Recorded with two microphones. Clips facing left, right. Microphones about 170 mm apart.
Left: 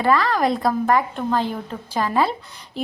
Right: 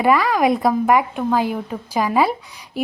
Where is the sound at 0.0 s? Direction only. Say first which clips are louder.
Right 3 dB; 10° right (ahead or behind).